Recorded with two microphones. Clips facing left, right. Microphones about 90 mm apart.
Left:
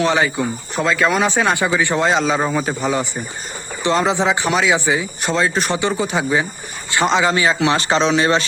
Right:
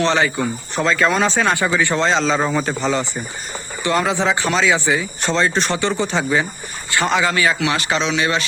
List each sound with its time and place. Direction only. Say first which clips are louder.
0.0 s speech: even; 15° left (ahead or behind)
7.6 s speech: left 4 dB; 30° left (ahead or behind)